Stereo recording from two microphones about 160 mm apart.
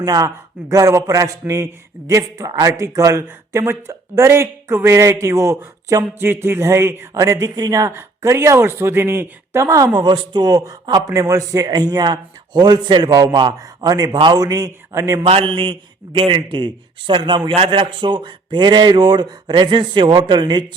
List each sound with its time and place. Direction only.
0.0 s speech: 20° right (ahead or behind)
15.3 s speech: 35° right (ahead or behind)